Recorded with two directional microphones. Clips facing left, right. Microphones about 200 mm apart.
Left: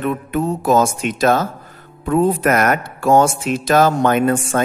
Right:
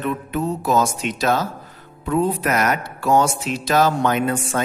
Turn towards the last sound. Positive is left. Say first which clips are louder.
# left 5 dB
turn(degrees=50)  # may be behind; listen again after turning